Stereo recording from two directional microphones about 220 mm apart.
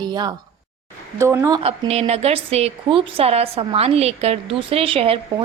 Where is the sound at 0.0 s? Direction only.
20° right (ahead or behind).